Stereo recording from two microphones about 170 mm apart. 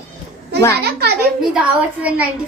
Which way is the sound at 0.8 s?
70° right (ahead or behind).